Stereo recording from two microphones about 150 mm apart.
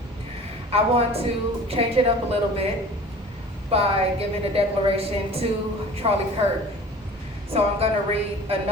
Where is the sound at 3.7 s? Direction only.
40° right (ahead or behind).